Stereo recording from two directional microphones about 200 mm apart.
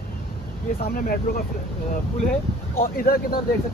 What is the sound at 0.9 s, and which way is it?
Speech, 45° left (ahead or behind).